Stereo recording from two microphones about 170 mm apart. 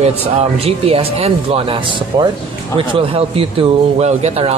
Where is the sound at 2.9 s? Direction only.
35° right (ahead or behind).